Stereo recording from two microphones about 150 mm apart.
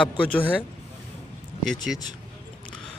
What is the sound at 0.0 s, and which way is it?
Speech, 10° left (ahead or behind).